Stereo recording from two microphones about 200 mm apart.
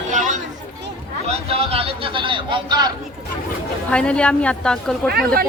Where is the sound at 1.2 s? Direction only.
30° right (ahead or behind).